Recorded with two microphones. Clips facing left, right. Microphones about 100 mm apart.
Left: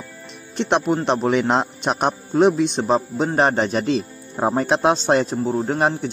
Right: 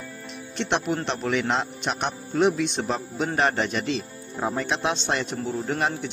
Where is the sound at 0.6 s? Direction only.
40° left (ahead or behind).